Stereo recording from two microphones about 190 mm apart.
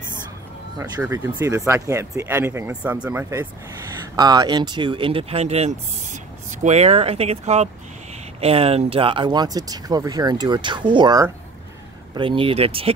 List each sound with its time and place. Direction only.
0.7 s speech: 15° right (ahead or behind)